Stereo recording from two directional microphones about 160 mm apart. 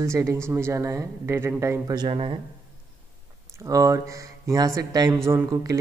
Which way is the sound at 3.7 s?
20° right (ahead or behind).